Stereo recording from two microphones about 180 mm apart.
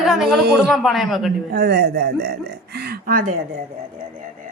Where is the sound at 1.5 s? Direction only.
65° right (ahead or behind); by 3.4 s 50° right (ahead or behind).